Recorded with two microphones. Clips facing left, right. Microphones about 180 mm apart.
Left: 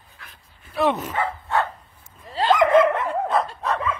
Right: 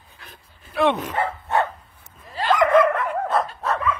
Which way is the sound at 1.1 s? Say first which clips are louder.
Right 1 dB; 20° right (ahead or behind).